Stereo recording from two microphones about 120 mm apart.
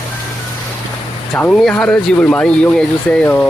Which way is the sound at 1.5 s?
5° left (ahead or behind).